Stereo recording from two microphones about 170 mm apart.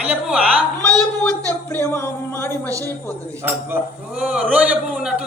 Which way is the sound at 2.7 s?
20° right (ahead or behind).